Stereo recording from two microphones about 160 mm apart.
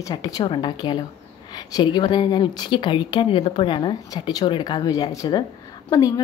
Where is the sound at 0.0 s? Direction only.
25° left (ahead or behind).